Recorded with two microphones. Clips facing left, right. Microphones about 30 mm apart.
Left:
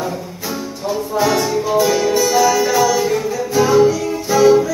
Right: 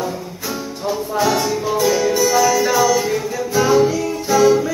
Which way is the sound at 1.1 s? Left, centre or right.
Centre.